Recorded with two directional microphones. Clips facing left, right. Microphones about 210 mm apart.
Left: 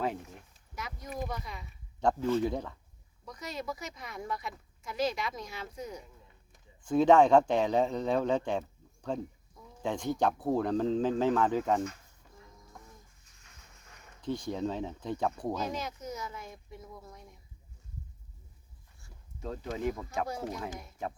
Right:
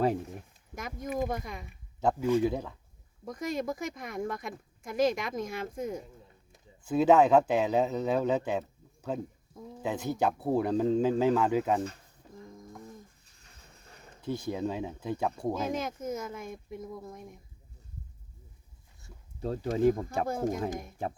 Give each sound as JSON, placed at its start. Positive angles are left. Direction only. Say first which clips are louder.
{"t": 0.8, "sound": "speech", "louder": "right 6 dB", "side_deg": -50}
{"t": 2.0, "sound": "speech", "louder": "right 2 dB", "side_deg": -10}
{"t": 3.2, "sound": "speech", "louder": "right 6 dB", "side_deg": -50}
{"t": 6.8, "sound": "speech", "louder": "even", "side_deg": -5}
{"t": 13.4, "sound": "a sound", "louder": "right 3 dB", "side_deg": -35}
{"t": 14.2, "sound": "speech", "louder": "right 1 dB", "side_deg": -10}
{"t": 15.7, "sound": "speech", "louder": "right 5 dB", "side_deg": -50}
{"t": 19.7, "sound": "speech", "louder": "right 8 dB", "side_deg": -35}
{"t": 20.2, "sound": "speech", "louder": "right 6 dB", "side_deg": -50}